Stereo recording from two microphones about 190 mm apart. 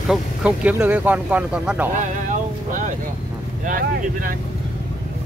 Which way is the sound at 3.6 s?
45° right (ahead or behind).